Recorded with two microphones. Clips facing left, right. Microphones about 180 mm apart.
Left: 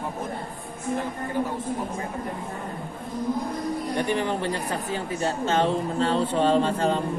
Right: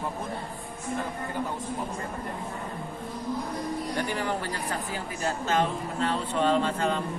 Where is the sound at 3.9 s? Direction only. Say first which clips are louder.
Left 5 dB; 20° left (ahead or behind).